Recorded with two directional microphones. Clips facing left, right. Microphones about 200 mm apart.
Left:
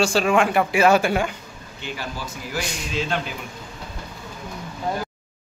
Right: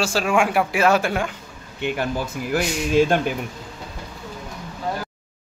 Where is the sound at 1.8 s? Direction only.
55° right (ahead or behind).